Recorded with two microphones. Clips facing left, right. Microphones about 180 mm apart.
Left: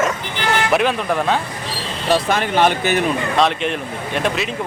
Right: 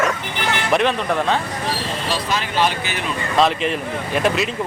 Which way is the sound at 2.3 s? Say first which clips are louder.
Left 4 dB; 55° left (ahead or behind).